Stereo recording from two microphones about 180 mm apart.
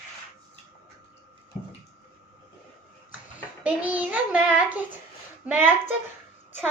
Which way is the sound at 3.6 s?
5° right (ahead or behind).